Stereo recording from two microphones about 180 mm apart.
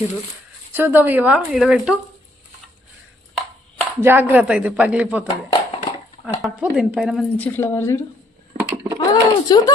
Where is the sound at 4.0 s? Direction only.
10° right (ahead or behind).